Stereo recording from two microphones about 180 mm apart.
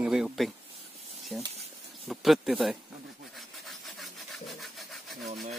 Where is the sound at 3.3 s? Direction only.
Centre (ahead or behind).